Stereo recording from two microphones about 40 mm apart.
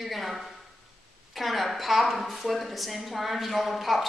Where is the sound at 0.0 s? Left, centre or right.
Centre.